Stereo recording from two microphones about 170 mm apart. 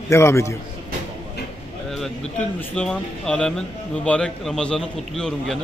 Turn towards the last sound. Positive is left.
turn(degrees=5)  # may be behind; listen again after turning